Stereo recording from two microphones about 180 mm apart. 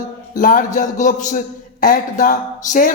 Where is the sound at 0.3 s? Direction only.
45° left (ahead or behind).